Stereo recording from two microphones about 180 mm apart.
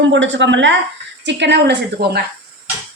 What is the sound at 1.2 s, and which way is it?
A woman's voice, 75° right (ahead or behind).